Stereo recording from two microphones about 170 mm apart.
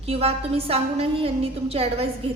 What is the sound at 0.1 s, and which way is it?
A woman's voice, 35° right (ahead or behind).